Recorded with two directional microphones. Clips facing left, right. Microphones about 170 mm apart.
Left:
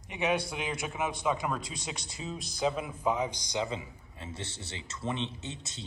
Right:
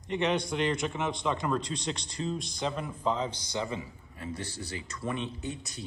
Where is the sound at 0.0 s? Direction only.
10° left (ahead or behind).